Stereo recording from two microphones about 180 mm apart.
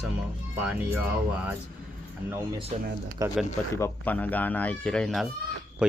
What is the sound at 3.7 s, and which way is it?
Speech, 10° left (ahead or behind).